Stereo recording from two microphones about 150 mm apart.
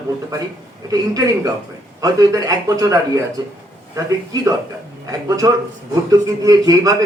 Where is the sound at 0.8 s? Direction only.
25° right (ahead or behind).